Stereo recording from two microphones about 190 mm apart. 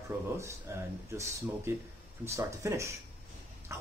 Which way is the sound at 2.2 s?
15° right (ahead or behind).